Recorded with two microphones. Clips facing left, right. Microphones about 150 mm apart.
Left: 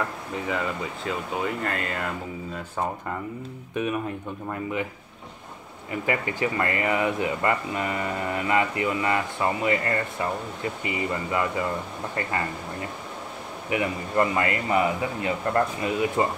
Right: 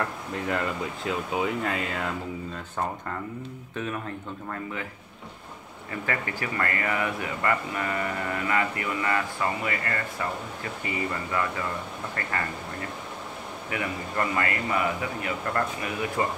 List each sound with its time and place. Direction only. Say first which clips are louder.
0.0 s speech: left 1 dB; centre (ahead or behind)
3.7 s speech: left 5 dB; 15° left (ahead or behind)
5.9 s speech: left 4 dB; 20° left (ahead or behind)
13.7 s speech: left 5 dB; 20° left (ahead or behind)